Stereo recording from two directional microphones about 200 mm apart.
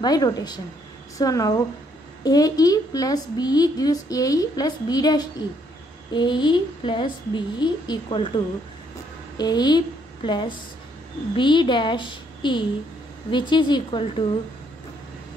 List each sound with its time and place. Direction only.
0.0 s a woman's voice: 20° left (ahead or behind)
9.4 s a woman's voice: 20° left (ahead or behind)